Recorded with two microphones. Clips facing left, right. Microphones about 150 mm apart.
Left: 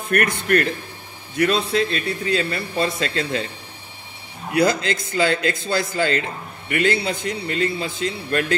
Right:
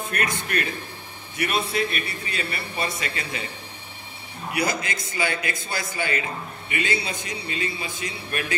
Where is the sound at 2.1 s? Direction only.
70° left (ahead or behind).